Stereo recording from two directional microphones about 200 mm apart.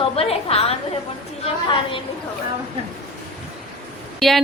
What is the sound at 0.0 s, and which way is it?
A woman's voice, 30° left (ahead or behind).